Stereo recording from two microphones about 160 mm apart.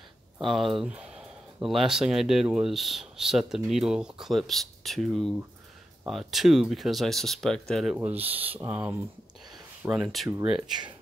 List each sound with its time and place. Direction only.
0.4 s speech: centre (ahead or behind)
7.9 s speech: 10° right (ahead or behind)
8.2 s speech: 35° right (ahead or behind)
8.5 s speech: 10° right (ahead or behind)
10.0 s speech: centre (ahead or behind)
10.4 s speech: 30° right (ahead or behind)